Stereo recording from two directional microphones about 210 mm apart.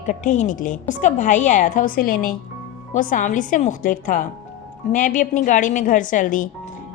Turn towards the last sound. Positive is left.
turn(degrees=40)  # may be behind; listen again after turning